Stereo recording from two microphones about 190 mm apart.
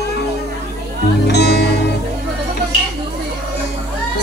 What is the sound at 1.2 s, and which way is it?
Music, 65° left (ahead or behind).